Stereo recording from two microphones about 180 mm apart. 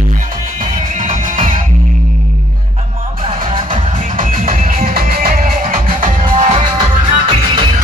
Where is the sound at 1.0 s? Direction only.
50° right (ahead or behind).